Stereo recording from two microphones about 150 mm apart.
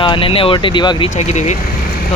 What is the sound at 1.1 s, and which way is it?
Speech, 50° left (ahead or behind).